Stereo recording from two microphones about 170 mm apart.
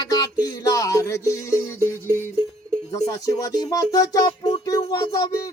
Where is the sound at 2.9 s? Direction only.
20° left (ahead or behind).